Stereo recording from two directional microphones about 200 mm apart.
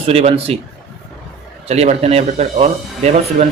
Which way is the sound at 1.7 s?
35° right (ahead or behind).